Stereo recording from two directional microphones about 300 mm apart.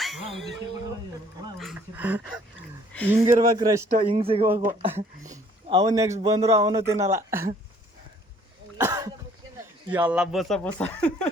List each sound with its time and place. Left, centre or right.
0.3 s a man's voice: centre
8.8 s cough: centre
9.9 s speech: centre